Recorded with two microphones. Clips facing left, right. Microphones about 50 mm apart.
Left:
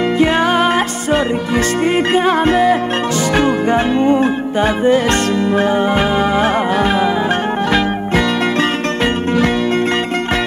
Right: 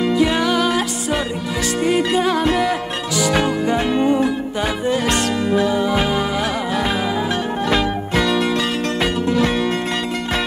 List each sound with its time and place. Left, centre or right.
0.2 s music: left
8.5 s music: left